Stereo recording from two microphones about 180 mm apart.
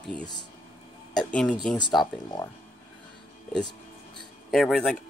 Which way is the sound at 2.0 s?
Centre (ahead or behind).